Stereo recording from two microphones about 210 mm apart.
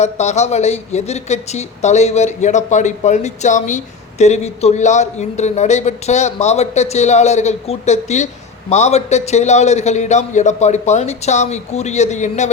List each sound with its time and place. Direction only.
0.0 s speech: 30° left (ahead or behind)